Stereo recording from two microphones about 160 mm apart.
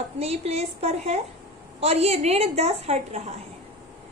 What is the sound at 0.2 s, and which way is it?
A woman's voice, 40° right (ahead or behind).